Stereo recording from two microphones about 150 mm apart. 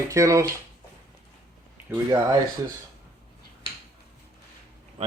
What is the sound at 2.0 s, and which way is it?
Speech, 25° right (ahead or behind).